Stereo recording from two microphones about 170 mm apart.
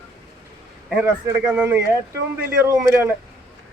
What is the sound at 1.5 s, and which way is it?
Speech, 10° right (ahead or behind).